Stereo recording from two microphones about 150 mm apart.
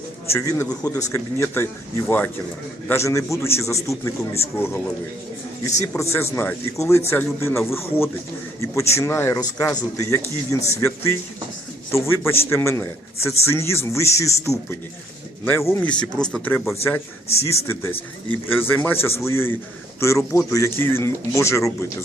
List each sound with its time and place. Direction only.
0.3 s a man's voice: 20° left (ahead or behind)
6.0 s a man's voice: 15° left (ahead or behind)